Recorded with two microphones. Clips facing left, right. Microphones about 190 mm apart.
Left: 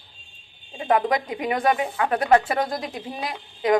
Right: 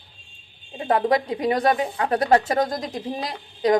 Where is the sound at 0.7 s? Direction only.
30° right (ahead or behind).